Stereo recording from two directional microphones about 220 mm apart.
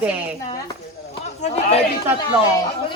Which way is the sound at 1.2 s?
30° left (ahead or behind).